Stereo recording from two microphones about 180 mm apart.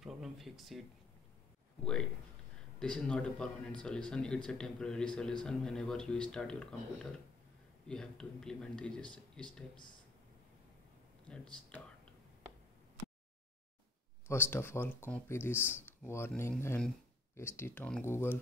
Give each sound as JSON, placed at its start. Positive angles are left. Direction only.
{"t": 0.0, "sound": "a sound", "side_deg": 0}
{"t": 2.8, "sound": "speech", "side_deg": 5}
{"t": 11.2, "sound": "speech", "side_deg": 5}
{"t": 14.2, "sound": "speech", "side_deg": 15}